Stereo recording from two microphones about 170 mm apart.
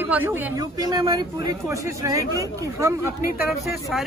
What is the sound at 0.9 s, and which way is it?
Speech, 25° right (ahead or behind).